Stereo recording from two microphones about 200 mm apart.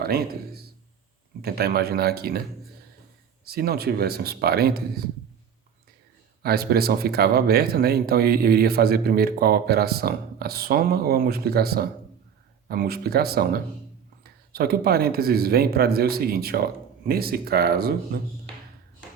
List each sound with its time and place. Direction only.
0.0 s speech: 50° right (ahead or behind)
3.4 s speech: 50° right (ahead or behind)
6.4 s speech: 50° right (ahead or behind)